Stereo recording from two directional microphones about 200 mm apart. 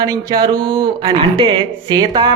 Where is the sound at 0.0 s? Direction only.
20° right (ahead or behind).